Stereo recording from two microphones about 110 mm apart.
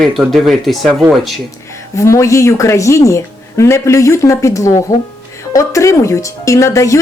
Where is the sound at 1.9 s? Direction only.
25° left (ahead or behind).